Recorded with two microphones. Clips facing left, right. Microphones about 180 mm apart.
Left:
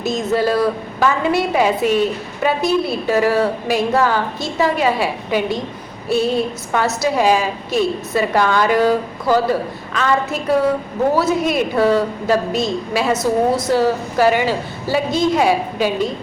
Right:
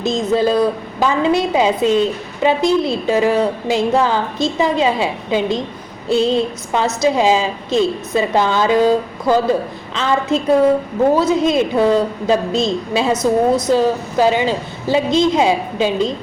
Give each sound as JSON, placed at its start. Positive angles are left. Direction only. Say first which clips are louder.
{"t": 0.0, "sound": "a woman's voice", "louder": "right 2 dB", "side_deg": -20}